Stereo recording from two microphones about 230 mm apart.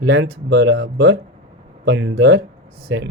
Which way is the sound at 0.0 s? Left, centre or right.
Right.